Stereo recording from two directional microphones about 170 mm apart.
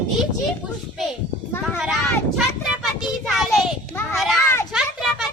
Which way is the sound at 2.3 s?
Centre (ahead or behind).